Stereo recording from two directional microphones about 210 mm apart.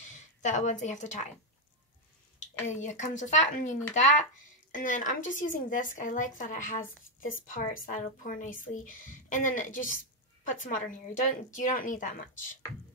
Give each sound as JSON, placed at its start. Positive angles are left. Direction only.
{"t": 0.0, "sound": "a woman's voice", "side_deg": 35}
{"t": 2.4, "sound": "a woman's voice", "side_deg": 35}